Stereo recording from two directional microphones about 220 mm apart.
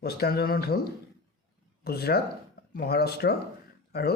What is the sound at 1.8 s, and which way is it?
Speech, 45° left (ahead or behind).